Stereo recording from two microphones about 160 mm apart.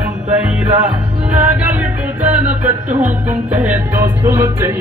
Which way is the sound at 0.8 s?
10° right (ahead or behind).